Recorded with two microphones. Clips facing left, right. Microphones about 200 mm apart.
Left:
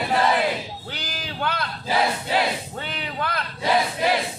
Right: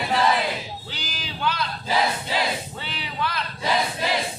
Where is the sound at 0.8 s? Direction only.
55° left (ahead or behind).